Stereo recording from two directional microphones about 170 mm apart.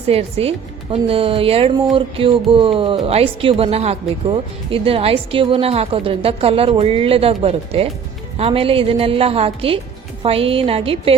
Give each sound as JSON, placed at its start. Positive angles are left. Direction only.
{"t": 0.1, "sound": "speech", "side_deg": -35}